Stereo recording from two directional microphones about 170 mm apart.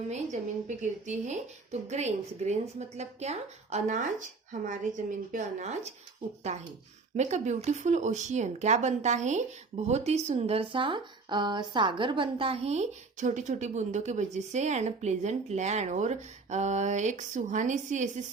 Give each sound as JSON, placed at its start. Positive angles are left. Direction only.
{"t": 0.8, "sound": "a woman's voice", "side_deg": -45}